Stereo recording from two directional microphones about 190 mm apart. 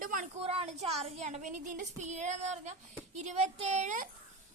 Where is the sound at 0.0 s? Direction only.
45° right (ahead or behind).